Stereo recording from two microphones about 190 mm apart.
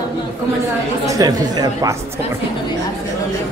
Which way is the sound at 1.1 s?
20° right (ahead or behind).